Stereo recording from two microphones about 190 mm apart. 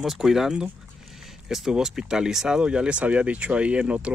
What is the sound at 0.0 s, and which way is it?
Speech, centre (ahead or behind).